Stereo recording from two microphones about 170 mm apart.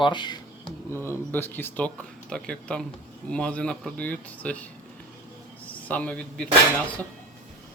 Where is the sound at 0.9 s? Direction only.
15° left (ahead or behind).